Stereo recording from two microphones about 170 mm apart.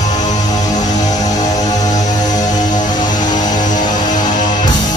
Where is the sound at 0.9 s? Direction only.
20° left (ahead or behind).